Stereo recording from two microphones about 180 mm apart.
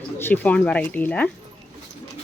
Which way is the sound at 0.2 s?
10° left (ahead or behind).